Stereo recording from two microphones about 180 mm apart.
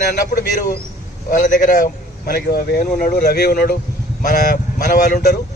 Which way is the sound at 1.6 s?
50° left (ahead or behind).